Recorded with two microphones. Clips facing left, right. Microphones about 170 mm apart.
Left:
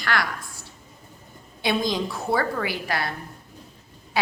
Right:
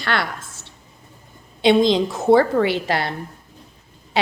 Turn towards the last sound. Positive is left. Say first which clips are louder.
# right 7 dB
turn(degrees=-25)  # may be behind; listen again after turning